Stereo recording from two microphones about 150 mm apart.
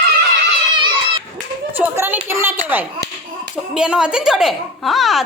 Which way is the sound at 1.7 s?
15° right (ahead or behind).